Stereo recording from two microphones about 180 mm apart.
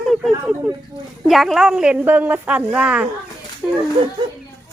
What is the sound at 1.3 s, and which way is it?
Speech, centre (ahead or behind).